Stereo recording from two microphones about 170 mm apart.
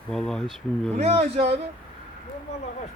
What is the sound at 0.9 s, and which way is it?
Speech, 40° right (ahead or behind).